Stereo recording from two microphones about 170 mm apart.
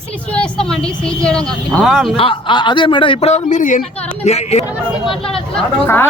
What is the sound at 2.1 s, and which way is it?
A man's voice, 30° left (ahead or behind).